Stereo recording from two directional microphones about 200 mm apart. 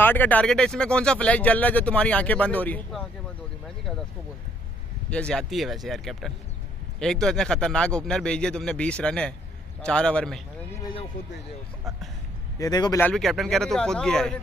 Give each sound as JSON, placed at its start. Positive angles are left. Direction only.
{"t": 0.0, "sound": "speech", "side_deg": 10}
{"t": 5.1, "sound": "a man's voice", "side_deg": 5}
{"t": 12.5, "sound": "speech", "side_deg": 20}
{"t": 13.0, "sound": "a man's voice", "side_deg": 0}